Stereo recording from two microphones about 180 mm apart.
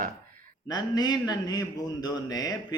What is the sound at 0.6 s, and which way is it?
Speech, 20° left (ahead or behind).